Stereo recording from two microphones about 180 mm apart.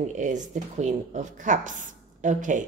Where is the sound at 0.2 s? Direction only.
40° right (ahead or behind).